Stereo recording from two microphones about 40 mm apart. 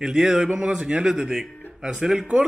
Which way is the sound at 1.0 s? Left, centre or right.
Centre.